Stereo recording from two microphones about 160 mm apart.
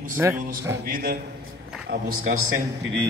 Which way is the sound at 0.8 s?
65° right (ahead or behind).